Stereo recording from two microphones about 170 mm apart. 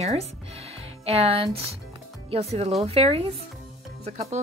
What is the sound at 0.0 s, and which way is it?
Speech, 40° right (ahead or behind).